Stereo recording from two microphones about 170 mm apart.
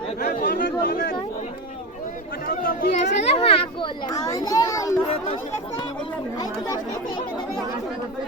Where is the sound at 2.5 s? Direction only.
60° left (ahead or behind).